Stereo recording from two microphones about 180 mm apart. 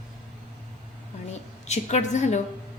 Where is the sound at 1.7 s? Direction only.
40° left (ahead or behind).